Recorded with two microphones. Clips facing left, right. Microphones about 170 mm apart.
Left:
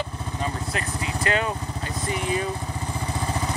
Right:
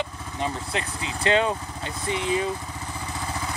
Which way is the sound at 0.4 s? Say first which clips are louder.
Right 1 dB; 25° right (ahead or behind).